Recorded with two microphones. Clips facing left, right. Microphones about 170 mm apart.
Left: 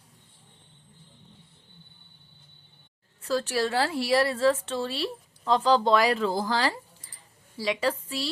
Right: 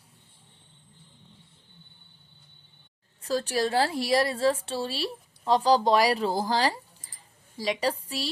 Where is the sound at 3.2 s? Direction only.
40° right (ahead or behind).